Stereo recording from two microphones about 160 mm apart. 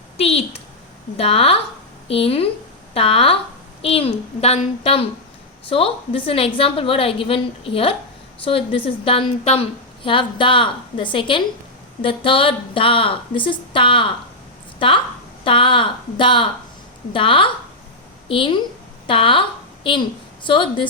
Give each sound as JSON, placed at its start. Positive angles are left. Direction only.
{"t": 0.2, "sound": "a child's voice", "side_deg": 40}